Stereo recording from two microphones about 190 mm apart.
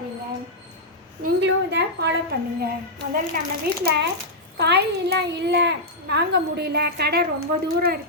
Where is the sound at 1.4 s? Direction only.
65° right (ahead or behind).